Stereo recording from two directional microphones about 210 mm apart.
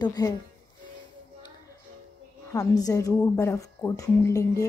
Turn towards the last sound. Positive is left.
turn(degrees=15)  # may be behind; listen again after turning